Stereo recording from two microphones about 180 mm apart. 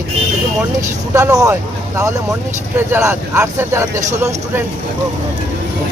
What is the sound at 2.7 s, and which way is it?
Speech, 10° right (ahead or behind).